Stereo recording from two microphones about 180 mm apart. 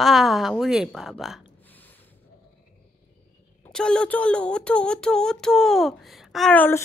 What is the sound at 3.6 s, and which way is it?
Speech, 5° left (ahead or behind).